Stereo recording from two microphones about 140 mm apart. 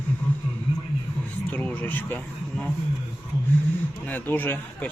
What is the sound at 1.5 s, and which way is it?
Speech, 10° left (ahead or behind).